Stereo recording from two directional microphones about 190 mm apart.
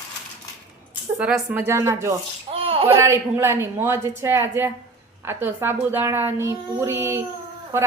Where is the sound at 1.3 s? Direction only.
15° right (ahead or behind).